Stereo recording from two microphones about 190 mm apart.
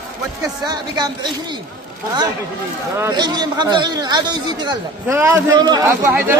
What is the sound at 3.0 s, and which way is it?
A man's voice, 20° right (ahead or behind).